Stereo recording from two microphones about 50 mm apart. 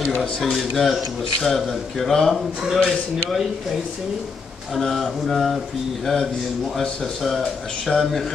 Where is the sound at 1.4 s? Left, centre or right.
Centre.